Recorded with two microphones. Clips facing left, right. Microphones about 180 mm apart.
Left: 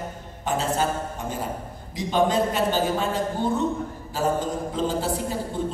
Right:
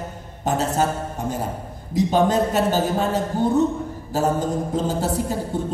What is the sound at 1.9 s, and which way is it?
A man's voice, 45° right (ahead or behind).